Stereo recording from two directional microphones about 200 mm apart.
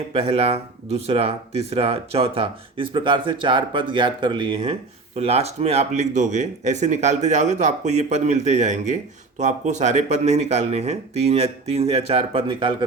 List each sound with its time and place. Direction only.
0.1 s speech: 30° right (ahead or behind)